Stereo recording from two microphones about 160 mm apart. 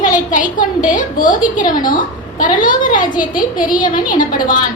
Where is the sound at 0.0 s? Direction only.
55° left (ahead or behind).